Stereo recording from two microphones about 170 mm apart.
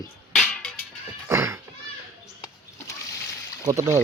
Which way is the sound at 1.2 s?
15° right (ahead or behind).